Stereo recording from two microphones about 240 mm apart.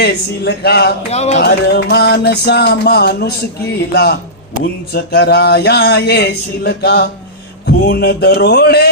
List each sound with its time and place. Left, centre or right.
0.0 s speech: left
1.1 s music: left
1.4 s speech: left